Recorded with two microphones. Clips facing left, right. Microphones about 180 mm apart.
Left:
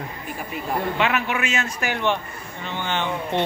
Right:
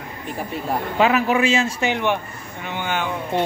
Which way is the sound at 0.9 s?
35° right (ahead or behind).